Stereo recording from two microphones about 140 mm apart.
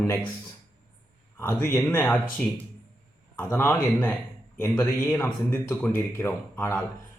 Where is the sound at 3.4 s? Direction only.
15° left (ahead or behind).